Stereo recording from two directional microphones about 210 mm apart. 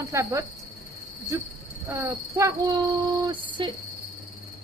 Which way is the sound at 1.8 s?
15° right (ahead or behind).